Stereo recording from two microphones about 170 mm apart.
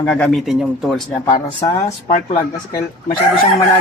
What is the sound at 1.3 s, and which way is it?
Speech, 20° left (ahead or behind).